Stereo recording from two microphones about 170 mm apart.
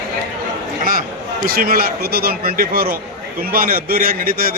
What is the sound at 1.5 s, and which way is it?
Speech, 60° right (ahead or behind).